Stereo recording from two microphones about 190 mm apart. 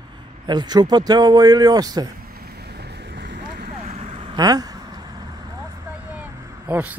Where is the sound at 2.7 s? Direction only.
60° right (ahead or behind).